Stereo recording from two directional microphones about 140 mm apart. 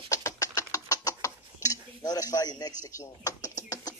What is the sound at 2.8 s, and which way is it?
Speech, 25° left (ahead or behind).